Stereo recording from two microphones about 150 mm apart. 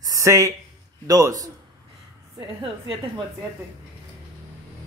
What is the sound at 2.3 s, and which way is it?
Speech, 35° right (ahead or behind).